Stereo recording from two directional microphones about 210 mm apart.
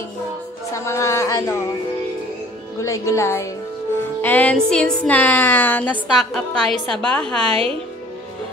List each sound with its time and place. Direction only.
0.8 s speech: 15° left (ahead or behind)
2.8 s speech: 15° left (ahead or behind)
4.2 s music: 5° left (ahead or behind)
7.4 s speech: 25° right (ahead or behind)